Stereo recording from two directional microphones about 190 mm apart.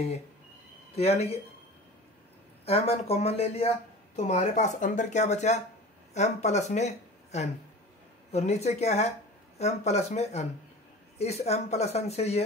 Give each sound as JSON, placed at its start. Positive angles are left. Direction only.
{"t": 0.9, "sound": "speech", "side_deg": 35}
{"t": 2.6, "sound": "speech", "side_deg": 30}